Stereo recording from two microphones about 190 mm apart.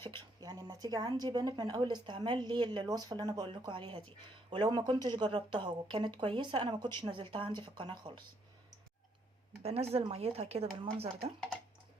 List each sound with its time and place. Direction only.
0.3 s speech: 20° right (ahead or behind)
9.6 s speech: 35° right (ahead or behind)